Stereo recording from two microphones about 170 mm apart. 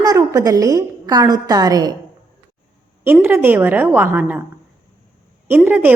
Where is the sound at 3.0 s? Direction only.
10° right (ahead or behind).